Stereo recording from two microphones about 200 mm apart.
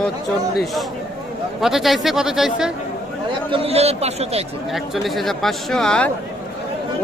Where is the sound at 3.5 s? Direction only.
30° right (ahead or behind).